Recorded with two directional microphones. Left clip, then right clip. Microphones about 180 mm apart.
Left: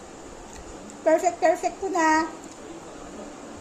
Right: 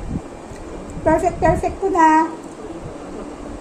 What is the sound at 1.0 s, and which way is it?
A child's voice, centre (ahead or behind).